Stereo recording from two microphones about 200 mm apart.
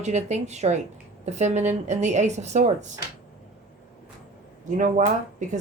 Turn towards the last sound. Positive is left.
turn(degrees=-40)  # may be behind; listen again after turning